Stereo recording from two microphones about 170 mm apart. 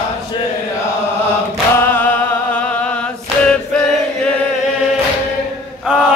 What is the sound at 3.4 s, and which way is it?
Choir, 5° left (ahead or behind).